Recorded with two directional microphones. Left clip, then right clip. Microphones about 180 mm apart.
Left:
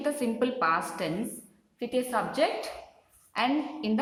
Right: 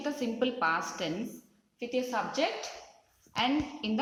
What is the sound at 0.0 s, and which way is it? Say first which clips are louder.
Speech: left 3 dB; 5° left (ahead or behind).